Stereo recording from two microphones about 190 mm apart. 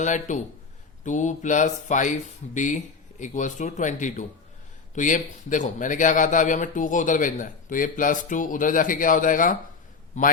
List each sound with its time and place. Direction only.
0.0 s a man's voice: 40° left (ahead or behind)